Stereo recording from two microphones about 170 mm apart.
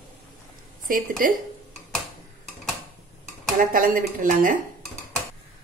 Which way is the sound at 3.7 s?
55° right (ahead or behind).